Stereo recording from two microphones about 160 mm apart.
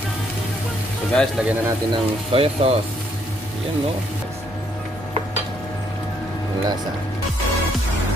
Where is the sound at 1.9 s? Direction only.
35° right (ahead or behind).